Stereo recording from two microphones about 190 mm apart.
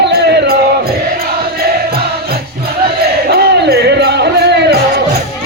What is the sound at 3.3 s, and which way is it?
Music, 60° right (ahead or behind).